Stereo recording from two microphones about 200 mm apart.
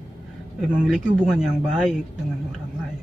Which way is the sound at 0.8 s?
Centre (ahead or behind).